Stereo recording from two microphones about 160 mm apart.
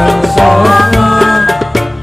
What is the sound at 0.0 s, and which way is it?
Music, centre (ahead or behind).